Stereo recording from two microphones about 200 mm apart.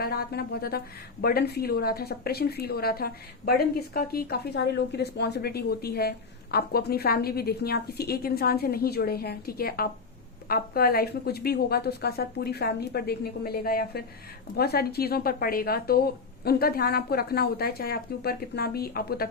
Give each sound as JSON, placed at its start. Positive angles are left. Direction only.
{"t": 0.0, "sound": "a woman's voice", "side_deg": 50}